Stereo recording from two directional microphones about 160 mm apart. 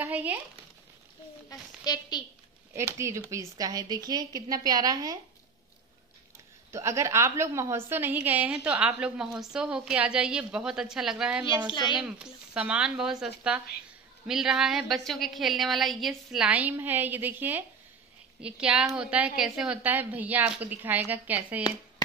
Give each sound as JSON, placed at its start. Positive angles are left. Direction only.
{"t": 0.0, "sound": "a sound", "side_deg": -10}
{"t": 1.5, "sound": "a woman's voice", "side_deg": 25}
{"t": 2.7, "sound": "a woman's voice", "side_deg": -15}
{"t": 6.7, "sound": "a woman's voice", "side_deg": -15}
{"t": 11.7, "sound": "a child's voice", "side_deg": 30}
{"t": 12.0, "sound": "a woman's voice", "side_deg": -5}